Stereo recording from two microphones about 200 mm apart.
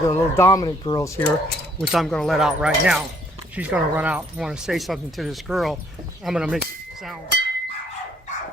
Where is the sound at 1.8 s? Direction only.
Centre (ahead or behind).